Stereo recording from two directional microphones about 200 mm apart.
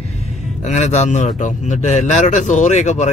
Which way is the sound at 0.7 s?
35° left (ahead or behind).